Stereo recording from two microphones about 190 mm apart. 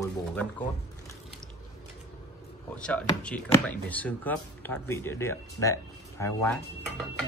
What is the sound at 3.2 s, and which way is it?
Speech, 5° left (ahead or behind).